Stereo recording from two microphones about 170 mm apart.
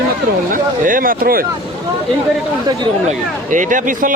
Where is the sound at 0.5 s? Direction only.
55° right (ahead or behind).